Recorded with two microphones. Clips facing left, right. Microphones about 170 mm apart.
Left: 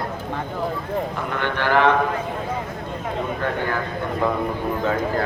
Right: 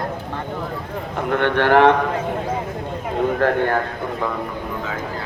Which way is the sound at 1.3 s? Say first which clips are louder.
Right 7 dB; 65° right (ahead or behind).